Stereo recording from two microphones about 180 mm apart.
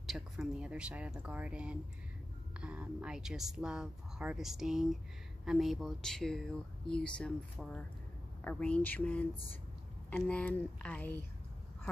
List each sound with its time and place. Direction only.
0.0 s speech: centre (ahead or behind)